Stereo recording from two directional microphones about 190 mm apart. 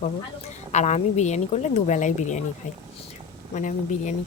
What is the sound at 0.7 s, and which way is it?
Speech, 35° left (ahead or behind).